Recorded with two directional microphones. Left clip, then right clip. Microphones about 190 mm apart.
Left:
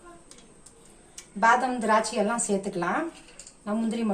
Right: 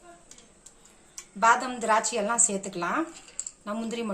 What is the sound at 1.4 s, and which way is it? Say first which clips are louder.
A woman's voice: left 1 dB; 60° right (ahead or behind).